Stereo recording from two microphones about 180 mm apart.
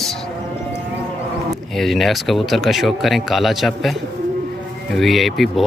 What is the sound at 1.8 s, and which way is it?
Speech, centre (ahead or behind).